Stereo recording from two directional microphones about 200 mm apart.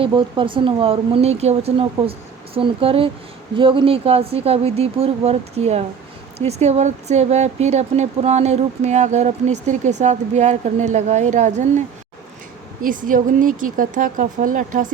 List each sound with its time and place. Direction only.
0.0 s speech: 25° right (ahead or behind)
12.8 s speech: 45° right (ahead or behind)